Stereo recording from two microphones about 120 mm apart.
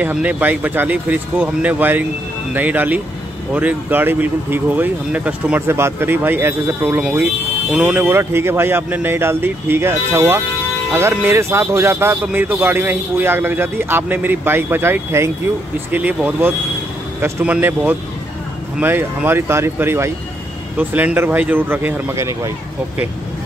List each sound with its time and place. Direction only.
0.0 s speech: 10° right (ahead or behind)